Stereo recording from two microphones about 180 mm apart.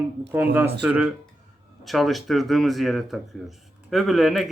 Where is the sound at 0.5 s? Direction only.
10° right (ahead or behind).